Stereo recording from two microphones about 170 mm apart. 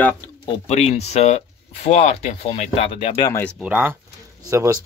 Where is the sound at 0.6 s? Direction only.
40° left (ahead or behind).